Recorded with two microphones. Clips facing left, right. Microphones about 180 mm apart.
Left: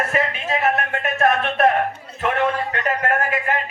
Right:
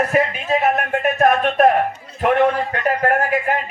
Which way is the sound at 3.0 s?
35° right (ahead or behind).